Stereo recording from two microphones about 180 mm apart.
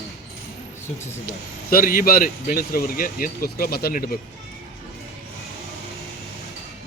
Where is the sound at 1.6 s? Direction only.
55° left (ahead or behind).